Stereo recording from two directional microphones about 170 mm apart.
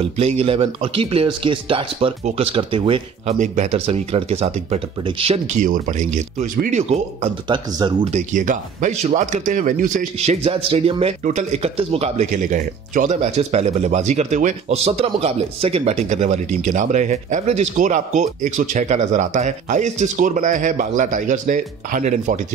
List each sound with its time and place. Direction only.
0.0 s speech: 35° right (ahead or behind)
5.7 s speech: 50° right (ahead or behind)
7.4 s speech: 25° right (ahead or behind); by 22.4 s 45° right (ahead or behind)